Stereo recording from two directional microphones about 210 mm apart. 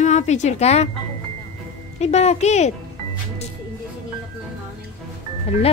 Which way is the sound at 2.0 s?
30° left (ahead or behind).